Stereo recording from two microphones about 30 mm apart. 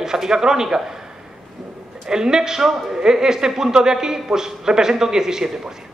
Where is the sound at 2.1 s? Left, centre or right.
Right.